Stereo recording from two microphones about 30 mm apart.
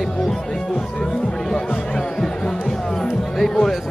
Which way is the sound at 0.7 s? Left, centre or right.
Left.